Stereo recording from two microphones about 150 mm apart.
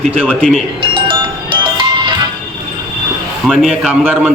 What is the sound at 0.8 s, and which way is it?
Music, 35° right (ahead or behind).